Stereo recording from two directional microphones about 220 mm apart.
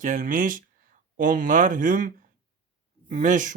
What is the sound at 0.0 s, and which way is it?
Speech, 35° right (ahead or behind).